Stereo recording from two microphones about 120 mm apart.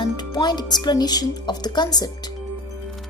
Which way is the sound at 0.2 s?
35° left (ahead or behind).